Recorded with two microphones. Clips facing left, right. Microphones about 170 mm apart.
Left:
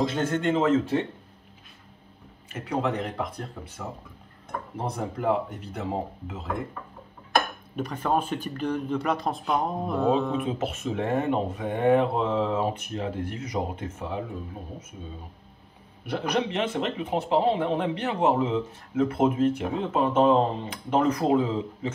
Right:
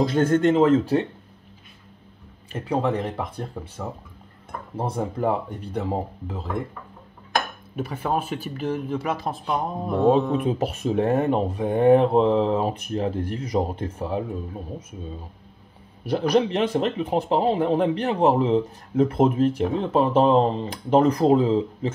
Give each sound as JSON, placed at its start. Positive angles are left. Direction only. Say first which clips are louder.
{"t": 0.3, "sound": "speech", "louder": "right 6 dB", "side_deg": -40}
{"t": 2.8, "sound": "speech", "louder": "right 1 dB", "side_deg": -30}
{"t": 7.3, "sound": "speech", "louder": "even", "side_deg": -5}
{"t": 10.6, "sound": "speech", "louder": "right 6 dB", "side_deg": -35}
{"t": 16.1, "sound": "speech", "louder": "right 6 dB", "side_deg": -35}